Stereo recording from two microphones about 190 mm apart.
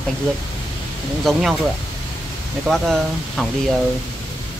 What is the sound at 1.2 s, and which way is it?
Speech, centre (ahead or behind).